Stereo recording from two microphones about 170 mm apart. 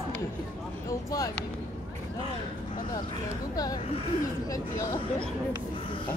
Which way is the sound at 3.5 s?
20° left (ahead or behind).